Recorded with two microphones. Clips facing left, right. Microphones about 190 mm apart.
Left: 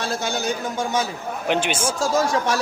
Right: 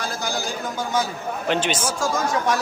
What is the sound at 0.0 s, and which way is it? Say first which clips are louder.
Speech: left 3 dB; 25° left (ahead or behind).